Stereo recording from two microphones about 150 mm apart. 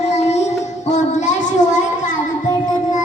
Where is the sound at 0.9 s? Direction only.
50° left (ahead or behind).